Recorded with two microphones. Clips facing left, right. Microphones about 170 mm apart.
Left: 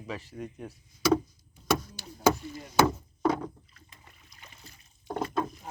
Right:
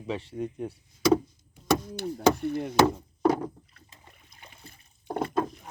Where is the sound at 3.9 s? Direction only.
30° right (ahead or behind).